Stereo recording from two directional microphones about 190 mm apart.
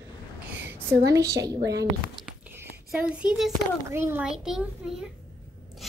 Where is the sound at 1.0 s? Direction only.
15° right (ahead or behind).